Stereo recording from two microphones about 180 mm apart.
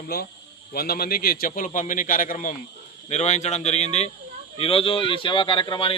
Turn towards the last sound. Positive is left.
turn(degrees=25)  # may be behind; listen again after turning